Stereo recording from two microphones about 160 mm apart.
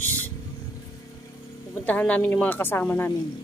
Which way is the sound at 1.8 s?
10° left (ahead or behind).